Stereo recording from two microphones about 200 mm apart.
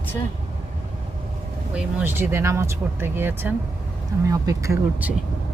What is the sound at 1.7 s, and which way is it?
Speech, 10° right (ahead or behind).